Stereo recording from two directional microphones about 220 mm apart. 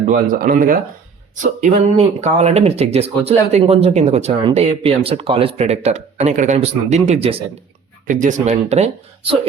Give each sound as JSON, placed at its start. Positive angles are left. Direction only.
{"t": 0.1, "sound": "speech", "side_deg": -40}